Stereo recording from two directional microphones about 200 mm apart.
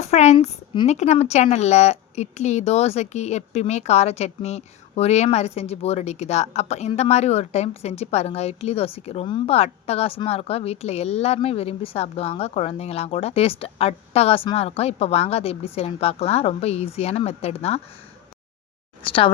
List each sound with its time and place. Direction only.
0.0 s speech: 35° left (ahead or behind)
19.0 s speech: 25° left (ahead or behind)